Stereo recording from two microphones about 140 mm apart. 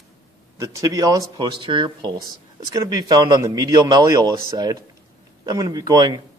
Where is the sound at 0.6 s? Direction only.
25° right (ahead or behind).